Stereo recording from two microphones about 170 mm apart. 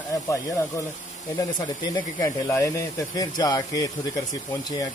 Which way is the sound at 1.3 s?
20° left (ahead or behind).